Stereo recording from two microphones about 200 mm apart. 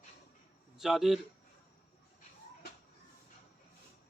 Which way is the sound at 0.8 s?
Centre (ahead or behind).